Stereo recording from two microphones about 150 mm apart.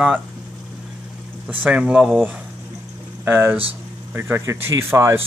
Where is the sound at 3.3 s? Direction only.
15° right (ahead or behind).